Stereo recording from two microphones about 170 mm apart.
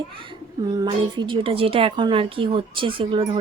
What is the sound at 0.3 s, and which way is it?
A woman's voice, 25° right (ahead or behind).